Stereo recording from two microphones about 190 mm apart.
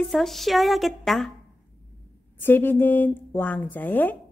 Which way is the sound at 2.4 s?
10° left (ahead or behind).